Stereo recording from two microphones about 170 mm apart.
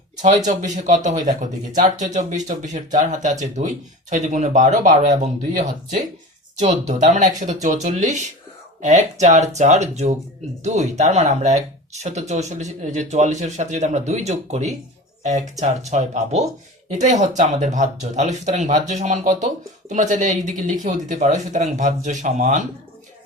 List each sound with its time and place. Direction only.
0.2 s speech: 45° right (ahead or behind)
6.6 s speech: 45° right (ahead or behind)